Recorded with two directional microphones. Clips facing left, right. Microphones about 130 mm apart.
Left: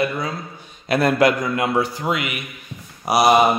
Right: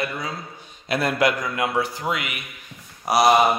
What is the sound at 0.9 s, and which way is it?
A man's voice, 45° left (ahead or behind).